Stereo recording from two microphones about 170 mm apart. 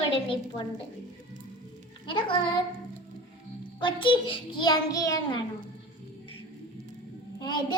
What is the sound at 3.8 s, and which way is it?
A child's voice, 30° left (ahead or behind).